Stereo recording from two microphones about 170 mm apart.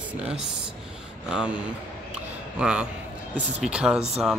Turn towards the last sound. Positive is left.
turn(degrees=-5)  # may be behind; listen again after turning